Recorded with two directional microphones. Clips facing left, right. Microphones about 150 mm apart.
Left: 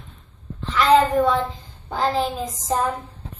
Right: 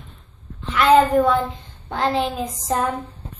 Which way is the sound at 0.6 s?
Centre (ahead or behind).